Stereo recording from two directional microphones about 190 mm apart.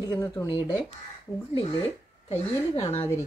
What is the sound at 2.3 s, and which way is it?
Speech, 35° left (ahead or behind).